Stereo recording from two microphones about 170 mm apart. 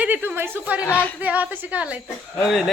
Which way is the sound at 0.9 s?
10° left (ahead or behind).